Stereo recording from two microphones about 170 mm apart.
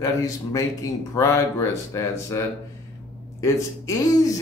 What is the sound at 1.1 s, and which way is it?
Speech, 15° left (ahead or behind).